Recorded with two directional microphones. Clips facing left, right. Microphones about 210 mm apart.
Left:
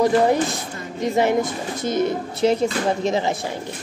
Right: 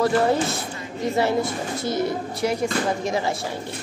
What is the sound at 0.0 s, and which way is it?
Speech, 15° left (ahead or behind).